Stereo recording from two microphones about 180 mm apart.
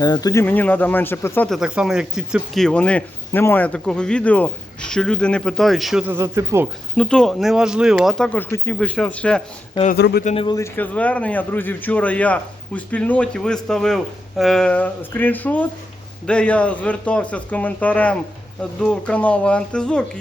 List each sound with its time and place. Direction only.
0.0 s a man's voice: 20° left (ahead or behind)
1.5 s speech: 5° right (ahead or behind)
6.9 s speech: 5° left (ahead or behind)
9.9 s speech: 60° left (ahead or behind)
10.2 s a man's voice: 30° left (ahead or behind)
10.6 s a man's voice: 10° left (ahead or behind)